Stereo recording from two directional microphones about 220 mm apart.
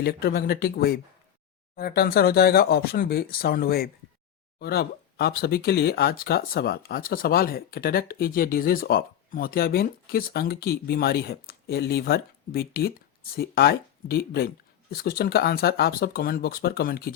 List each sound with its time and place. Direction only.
0.0 s speech: 45° left (ahead or behind)